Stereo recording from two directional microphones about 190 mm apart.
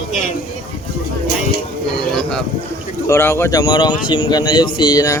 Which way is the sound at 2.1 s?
5° left (ahead or behind).